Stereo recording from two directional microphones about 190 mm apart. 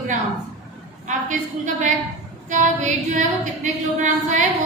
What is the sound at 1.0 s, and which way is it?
A woman's voice, 40° right (ahead or behind).